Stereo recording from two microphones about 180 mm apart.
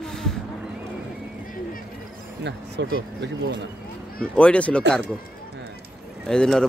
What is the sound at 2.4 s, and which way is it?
Speech, 75° right (ahead or behind).